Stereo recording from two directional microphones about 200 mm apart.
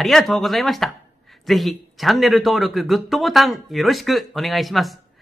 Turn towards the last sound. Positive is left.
turn(degrees=0)  # may be behind; listen again after turning